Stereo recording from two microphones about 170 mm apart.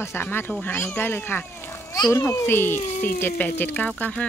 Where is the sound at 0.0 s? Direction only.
15° left (ahead or behind).